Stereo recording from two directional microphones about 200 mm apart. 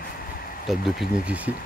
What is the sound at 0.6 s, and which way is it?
Speech, centre (ahead or behind).